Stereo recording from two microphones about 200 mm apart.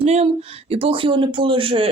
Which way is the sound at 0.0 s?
30° right (ahead or behind).